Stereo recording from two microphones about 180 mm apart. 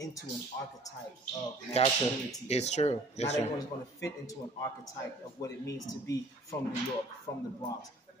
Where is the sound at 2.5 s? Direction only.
35° left (ahead or behind).